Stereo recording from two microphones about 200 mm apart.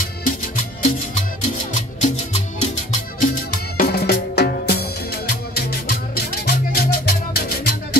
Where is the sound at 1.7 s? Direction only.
35° left (ahead or behind).